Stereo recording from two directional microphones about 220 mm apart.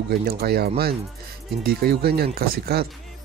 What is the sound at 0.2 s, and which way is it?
Speech, 45° right (ahead or behind).